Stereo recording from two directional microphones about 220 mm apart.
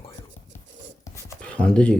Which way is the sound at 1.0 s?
10° left (ahead or behind).